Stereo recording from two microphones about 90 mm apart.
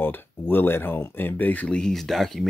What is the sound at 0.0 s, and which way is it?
Speech, 20° left (ahead or behind).